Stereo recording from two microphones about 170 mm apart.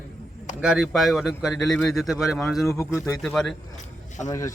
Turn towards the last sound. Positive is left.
turn(degrees=0)  # may be behind; listen again after turning